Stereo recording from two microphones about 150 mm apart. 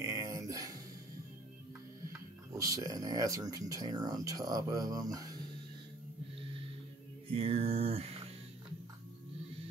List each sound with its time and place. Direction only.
0.0 s music: 25° right (ahead or behind)
2.5 s speech: 20° right (ahead or behind)
7.3 s mantra: 40° right (ahead or behind)